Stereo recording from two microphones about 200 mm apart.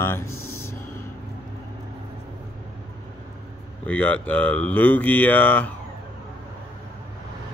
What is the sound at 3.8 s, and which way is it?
Speech, 5° left (ahead or behind).